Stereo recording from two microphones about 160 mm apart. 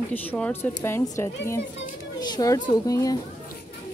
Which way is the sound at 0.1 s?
10° left (ahead or behind).